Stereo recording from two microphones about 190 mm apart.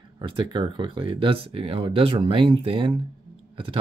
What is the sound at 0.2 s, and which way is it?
Speech, 25° right (ahead or behind).